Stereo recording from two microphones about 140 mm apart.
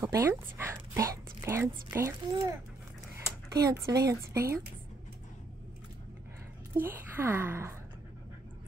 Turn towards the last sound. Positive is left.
turn(degrees=-15)  # may be behind; listen again after turning